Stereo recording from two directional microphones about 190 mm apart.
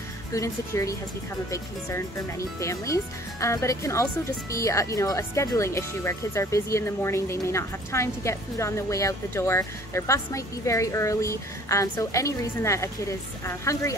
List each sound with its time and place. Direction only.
0.3 s speech: 15° left (ahead or behind)